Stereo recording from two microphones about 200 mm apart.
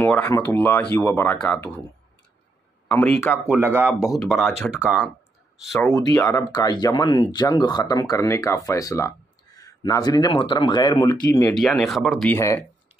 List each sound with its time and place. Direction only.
0.0 s speech: 10° left (ahead or behind)
2.9 s speech: 5° left (ahead or behind)
3.4 s speech: 10° right (ahead or behind)
6.1 s speech: 15° left (ahead or behind)
11.1 s speech: 10° left (ahead or behind)
12.4 s speech: 15° left (ahead or behind)